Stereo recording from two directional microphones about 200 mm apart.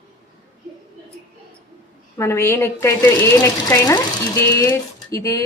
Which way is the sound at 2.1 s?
15° left (ahead or behind).